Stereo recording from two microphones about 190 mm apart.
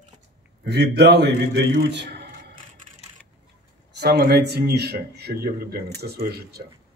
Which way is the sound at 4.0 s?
55° right (ahead or behind).